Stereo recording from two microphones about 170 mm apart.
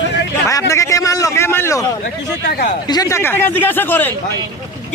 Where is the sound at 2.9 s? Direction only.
20° left (ahead or behind).